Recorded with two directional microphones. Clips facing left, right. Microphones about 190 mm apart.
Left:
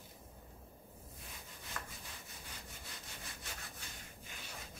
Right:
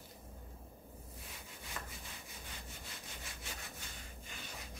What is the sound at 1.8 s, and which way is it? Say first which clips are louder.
Sawing: even; 15° right (ahead or behind).